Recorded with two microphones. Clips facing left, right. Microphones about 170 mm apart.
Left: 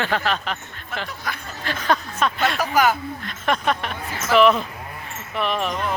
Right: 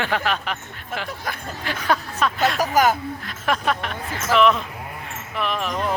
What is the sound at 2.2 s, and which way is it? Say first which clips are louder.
Speech: right 1 dB; centre (ahead or behind).